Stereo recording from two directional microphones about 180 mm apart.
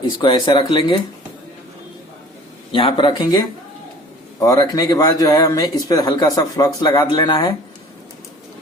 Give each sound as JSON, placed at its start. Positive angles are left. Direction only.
{"t": 0.0, "sound": "speech", "side_deg": 25}
{"t": 2.7, "sound": "speech", "side_deg": 25}